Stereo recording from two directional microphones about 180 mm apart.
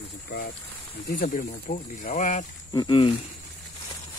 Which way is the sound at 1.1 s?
50° left (ahead or behind).